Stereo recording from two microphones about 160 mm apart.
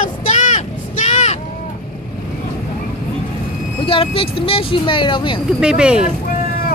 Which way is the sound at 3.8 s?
35° left (ahead or behind).